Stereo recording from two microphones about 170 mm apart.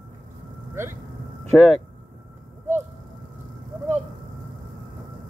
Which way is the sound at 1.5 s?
5° left (ahead or behind).